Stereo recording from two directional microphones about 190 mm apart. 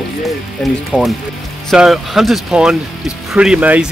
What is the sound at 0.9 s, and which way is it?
Speech, 5° right (ahead or behind).